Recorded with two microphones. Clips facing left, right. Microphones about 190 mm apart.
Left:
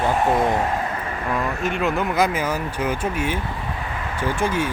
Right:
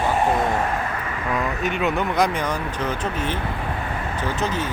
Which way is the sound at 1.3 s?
Centre (ahead or behind).